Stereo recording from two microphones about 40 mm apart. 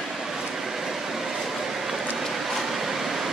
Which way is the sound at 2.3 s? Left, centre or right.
Centre.